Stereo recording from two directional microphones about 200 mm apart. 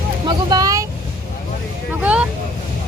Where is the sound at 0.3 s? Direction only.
20° right (ahead or behind).